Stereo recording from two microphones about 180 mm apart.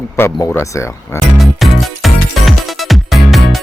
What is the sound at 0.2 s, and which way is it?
Speech, 15° left (ahead or behind).